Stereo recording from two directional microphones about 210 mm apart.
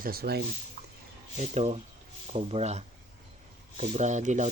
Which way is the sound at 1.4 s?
30° right (ahead or behind).